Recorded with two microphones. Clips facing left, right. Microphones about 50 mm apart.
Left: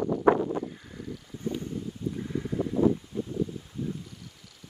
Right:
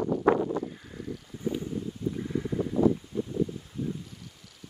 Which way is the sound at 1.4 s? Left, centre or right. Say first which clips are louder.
Right 1 dB; centre.